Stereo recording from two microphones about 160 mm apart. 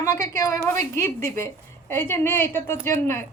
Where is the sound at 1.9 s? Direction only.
15° left (ahead or behind).